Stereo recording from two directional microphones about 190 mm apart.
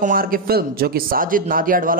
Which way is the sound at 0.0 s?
50° right (ahead or behind).